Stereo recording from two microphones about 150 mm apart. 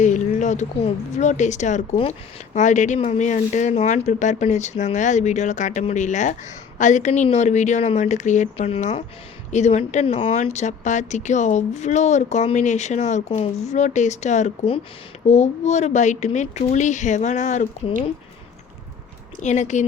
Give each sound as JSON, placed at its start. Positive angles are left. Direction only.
{"t": 0.0, "sound": "a sound", "side_deg": 55}
{"t": 0.9, "sound": "speech", "side_deg": 50}
{"t": 19.4, "sound": "speech", "side_deg": 50}